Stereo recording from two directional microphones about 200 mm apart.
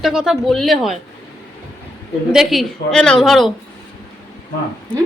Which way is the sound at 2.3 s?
Centre (ahead or behind).